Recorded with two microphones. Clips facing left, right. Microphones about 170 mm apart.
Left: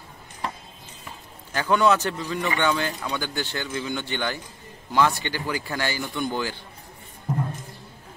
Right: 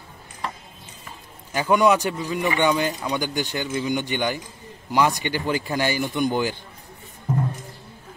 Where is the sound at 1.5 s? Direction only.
15° right (ahead or behind).